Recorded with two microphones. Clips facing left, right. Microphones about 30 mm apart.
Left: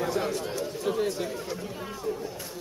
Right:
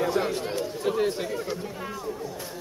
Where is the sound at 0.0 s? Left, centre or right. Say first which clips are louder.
Right 3 dB; right.